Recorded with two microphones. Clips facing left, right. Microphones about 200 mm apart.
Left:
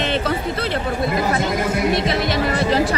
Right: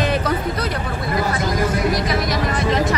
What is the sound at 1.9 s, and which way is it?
Music, 25° left (ahead or behind).